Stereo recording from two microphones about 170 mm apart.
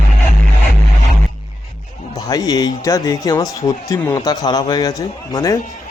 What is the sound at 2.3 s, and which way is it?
Speech, 25° left (ahead or behind).